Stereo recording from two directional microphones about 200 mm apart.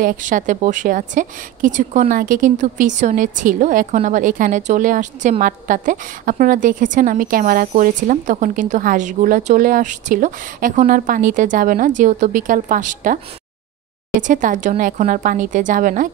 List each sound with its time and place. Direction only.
0.0 s a woman's voice: 40° right (ahead or behind)
14.2 s a woman's voice: 40° right (ahead or behind)